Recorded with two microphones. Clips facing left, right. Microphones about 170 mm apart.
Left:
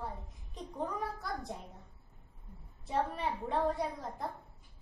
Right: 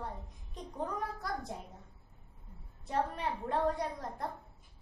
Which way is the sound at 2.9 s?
Centre (ahead or behind).